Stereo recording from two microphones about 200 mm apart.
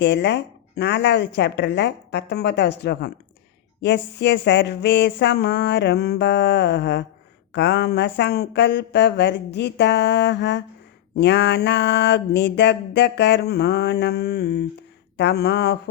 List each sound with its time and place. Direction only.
0.0 s mantra: 60° left (ahead or behind)